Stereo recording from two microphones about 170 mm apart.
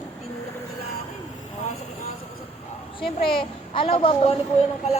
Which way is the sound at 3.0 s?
30° left (ahead or behind).